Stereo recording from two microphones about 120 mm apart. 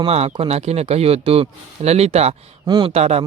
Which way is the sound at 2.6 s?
40° right (ahead or behind).